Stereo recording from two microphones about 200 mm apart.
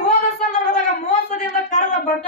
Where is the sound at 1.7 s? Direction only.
35° left (ahead or behind).